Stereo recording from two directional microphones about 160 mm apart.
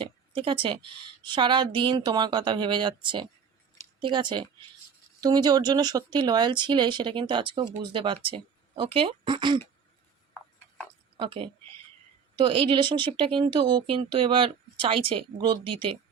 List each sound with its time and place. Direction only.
0.0 s speech: 35° right (ahead or behind)
11.2 s speech: 35° right (ahead or behind)